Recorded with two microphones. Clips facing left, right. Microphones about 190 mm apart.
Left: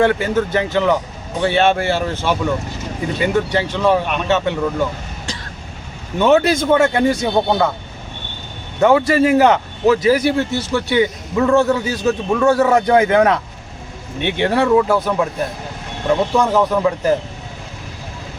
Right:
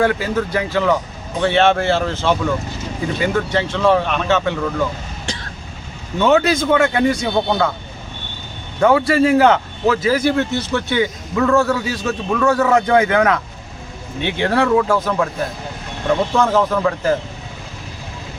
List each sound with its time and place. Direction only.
0.0 s a man's voice: 25° left (ahead or behind)
6.7 s a man's voice: 30° left (ahead or behind)
8.8 s a man's voice: 25° left (ahead or behind)